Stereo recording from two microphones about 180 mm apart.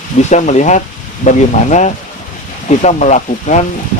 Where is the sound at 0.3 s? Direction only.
40° left (ahead or behind).